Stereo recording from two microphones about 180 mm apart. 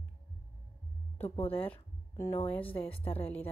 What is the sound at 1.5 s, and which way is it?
Speech, 10° left (ahead or behind).